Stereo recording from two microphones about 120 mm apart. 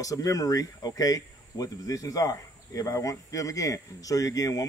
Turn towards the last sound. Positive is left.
turn(degrees=30)  # may be behind; listen again after turning